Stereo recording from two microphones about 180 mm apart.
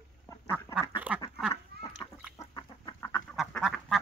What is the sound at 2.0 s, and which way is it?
Chicken, 20° left (ahead or behind).